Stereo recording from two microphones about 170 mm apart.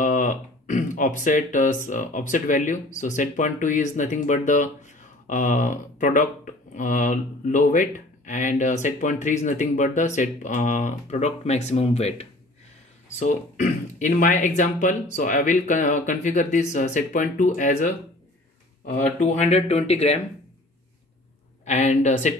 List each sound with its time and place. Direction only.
0.0 s speech: 50° left (ahead or behind)
19.1 s speech: 40° left (ahead or behind)
21.6 s speech: 40° left (ahead or behind)